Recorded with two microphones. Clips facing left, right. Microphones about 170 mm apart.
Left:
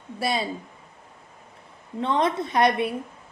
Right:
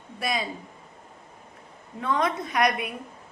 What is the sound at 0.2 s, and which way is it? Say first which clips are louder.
Speech: left 3 dB; 30° left (ahead or behind).